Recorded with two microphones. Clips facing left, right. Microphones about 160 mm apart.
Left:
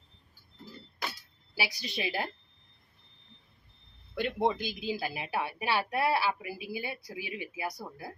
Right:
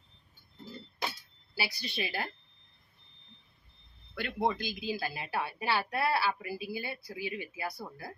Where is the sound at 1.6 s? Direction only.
15° left (ahead or behind).